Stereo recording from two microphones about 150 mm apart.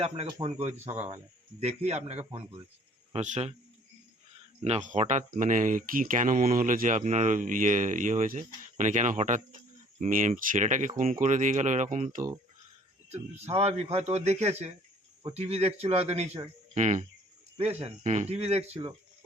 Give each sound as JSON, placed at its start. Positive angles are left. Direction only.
{"t": 0.4, "sound": "a man's voice", "side_deg": -45}
{"t": 4.6, "sound": "speech", "side_deg": -50}
{"t": 13.1, "sound": "a man's voice", "side_deg": -45}
{"t": 16.7, "sound": "cricket", "side_deg": -55}
{"t": 17.6, "sound": "a man's voice", "side_deg": -45}